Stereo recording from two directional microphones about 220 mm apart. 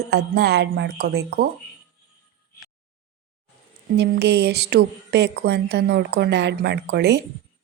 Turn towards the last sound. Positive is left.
turn(degrees=-50)  # may be behind; listen again after turning